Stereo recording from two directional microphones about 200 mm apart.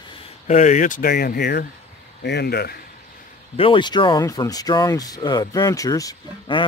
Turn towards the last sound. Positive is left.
turn(degrees=20)  # may be behind; listen again after turning